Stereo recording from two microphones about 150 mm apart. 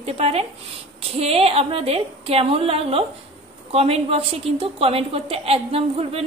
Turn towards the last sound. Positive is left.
turn(degrees=-40)  # may be behind; listen again after turning